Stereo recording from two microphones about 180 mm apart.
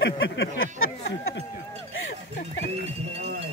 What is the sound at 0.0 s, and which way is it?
Speech, 85° left.